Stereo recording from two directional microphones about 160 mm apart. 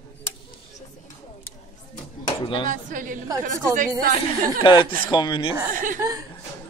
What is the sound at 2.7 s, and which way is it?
Speech, 55° right (ahead or behind).